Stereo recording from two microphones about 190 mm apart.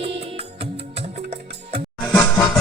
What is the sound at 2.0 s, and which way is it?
Music, 5° left (ahead or behind).